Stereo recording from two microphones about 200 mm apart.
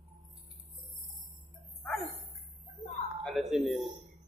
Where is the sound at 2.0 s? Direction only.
30° right (ahead or behind).